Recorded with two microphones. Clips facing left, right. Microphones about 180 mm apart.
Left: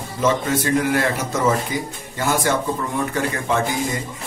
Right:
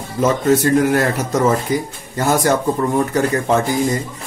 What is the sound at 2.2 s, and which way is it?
Speech, 40° right (ahead or behind).